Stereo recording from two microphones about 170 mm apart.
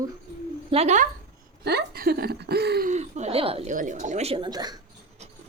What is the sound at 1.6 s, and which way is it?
Speech, 75° right (ahead or behind).